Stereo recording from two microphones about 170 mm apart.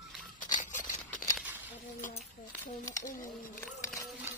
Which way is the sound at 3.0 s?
50° left (ahead or behind).